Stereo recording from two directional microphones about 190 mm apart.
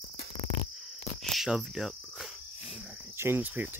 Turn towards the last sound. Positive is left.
turn(degrees=-10)  # may be behind; listen again after turning